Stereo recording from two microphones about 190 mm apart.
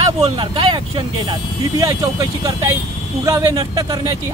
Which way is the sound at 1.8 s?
15° right (ahead or behind).